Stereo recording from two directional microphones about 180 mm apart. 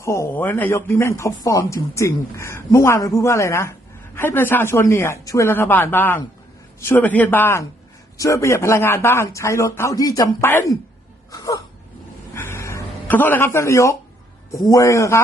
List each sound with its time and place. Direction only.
0.0 s speech: 15° left (ahead or behind)
12.3 s a sound: 15° left (ahead or behind)
14.6 s speech: 20° left (ahead or behind)